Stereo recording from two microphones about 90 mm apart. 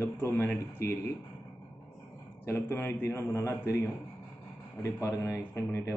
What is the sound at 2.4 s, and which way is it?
A man's voice, 25° left (ahead or behind).